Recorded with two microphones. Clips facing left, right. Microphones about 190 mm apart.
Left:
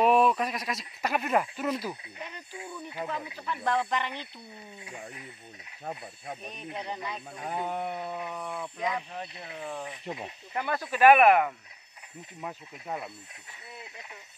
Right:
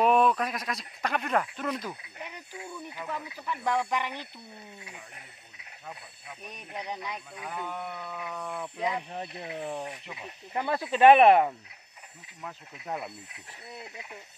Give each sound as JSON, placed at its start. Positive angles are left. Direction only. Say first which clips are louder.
{"t": 0.0, "sound": "speech", "louder": "even", "side_deg": 5}
{"t": 3.3, "sound": "speech", "louder": "even", "side_deg": -10}
{"t": 6.5, "sound": "speech", "louder": "right 2 dB", "side_deg": -15}
{"t": 7.3, "sound": "a sound", "louder": "left 6 dB", "side_deg": 40}
{"t": 8.2, "sound": "a sound", "louder": "left 1 dB", "side_deg": 15}
{"t": 8.5, "sound": "speech", "louder": "even", "side_deg": -5}
{"t": 8.8, "sound": "speech", "louder": "right 1 dB", "side_deg": -20}
{"t": 10.1, "sound": "a sound", "louder": "left 7 dB", "side_deg": 40}
{"t": 10.5, "sound": "speech", "louder": "right 2 dB", "side_deg": -25}
{"t": 12.8, "sound": "speech", "louder": "right 1 dB", "side_deg": 5}